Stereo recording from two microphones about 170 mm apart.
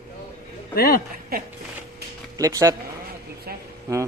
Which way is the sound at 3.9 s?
20° right (ahead or behind).